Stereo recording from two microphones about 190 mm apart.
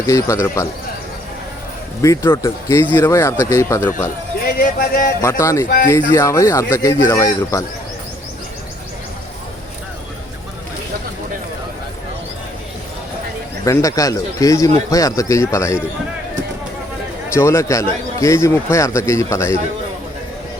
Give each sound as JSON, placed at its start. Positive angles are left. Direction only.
{"t": 0.1, "sound": "a man's voice", "side_deg": 15}
{"t": 2.0, "sound": "a man's voice", "side_deg": 15}
{"t": 4.4, "sound": "a sound", "side_deg": 50}
{"t": 5.2, "sound": "a man's voice", "side_deg": 15}
{"t": 13.7, "sound": "a man's voice", "side_deg": 15}
{"t": 17.3, "sound": "a man's voice", "side_deg": 15}